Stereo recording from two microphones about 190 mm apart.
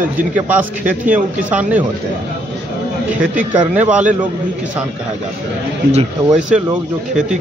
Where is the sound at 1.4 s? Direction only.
10° right (ahead or behind).